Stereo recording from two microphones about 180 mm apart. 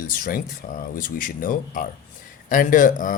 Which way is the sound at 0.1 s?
50° left (ahead or behind).